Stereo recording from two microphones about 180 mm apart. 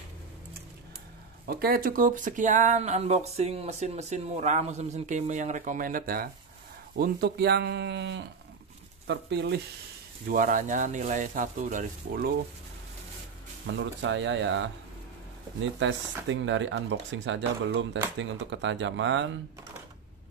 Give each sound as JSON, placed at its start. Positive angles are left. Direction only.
{"t": 1.5, "sound": "speech", "side_deg": -55}
{"t": 10.2, "sound": "speech", "side_deg": -50}
{"t": 13.7, "sound": "speech", "side_deg": -90}
{"t": 15.8, "sound": "speech", "side_deg": -90}